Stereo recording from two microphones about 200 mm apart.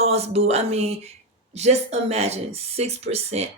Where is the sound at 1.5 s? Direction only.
35° right (ahead or behind).